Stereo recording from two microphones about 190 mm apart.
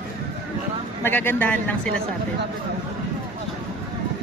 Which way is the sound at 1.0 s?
10° left (ahead or behind).